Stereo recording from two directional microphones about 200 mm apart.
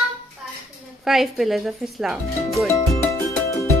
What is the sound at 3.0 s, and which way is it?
Music, 15° left (ahead or behind).